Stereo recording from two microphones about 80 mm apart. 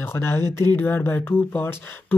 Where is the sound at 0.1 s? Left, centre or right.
Left.